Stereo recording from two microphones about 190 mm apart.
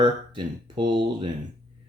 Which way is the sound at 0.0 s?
25° right (ahead or behind).